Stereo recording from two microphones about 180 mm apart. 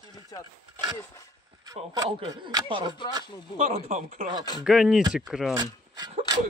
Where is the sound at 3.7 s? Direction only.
40° right (ahead or behind).